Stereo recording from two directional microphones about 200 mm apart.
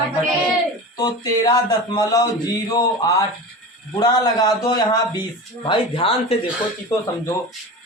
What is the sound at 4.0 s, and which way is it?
Speech, 20° left (ahead or behind).